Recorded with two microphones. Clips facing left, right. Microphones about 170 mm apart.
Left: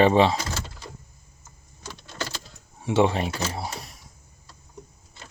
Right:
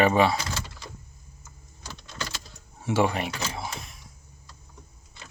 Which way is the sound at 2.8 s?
20° left (ahead or behind).